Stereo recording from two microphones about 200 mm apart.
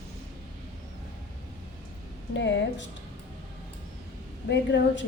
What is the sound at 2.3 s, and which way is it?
Speech, 65° left (ahead or behind).